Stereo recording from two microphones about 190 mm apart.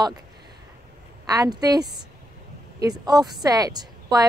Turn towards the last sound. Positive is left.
turn(degrees=-20)  # may be behind; listen again after turning